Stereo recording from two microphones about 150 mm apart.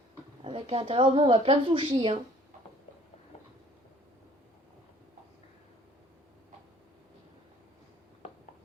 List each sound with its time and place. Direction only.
0.4 s a woman's voice: 40° right (ahead or behind)